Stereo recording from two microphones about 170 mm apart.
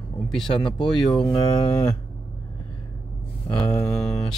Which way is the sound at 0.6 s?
25° left (ahead or behind).